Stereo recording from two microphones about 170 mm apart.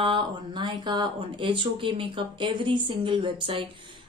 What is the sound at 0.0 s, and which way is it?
A woman's voice, 30° right (ahead or behind).